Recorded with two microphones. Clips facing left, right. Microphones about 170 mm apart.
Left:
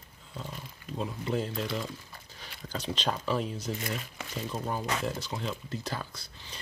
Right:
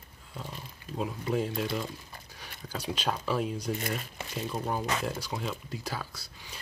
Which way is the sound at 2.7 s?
10° right (ahead or behind).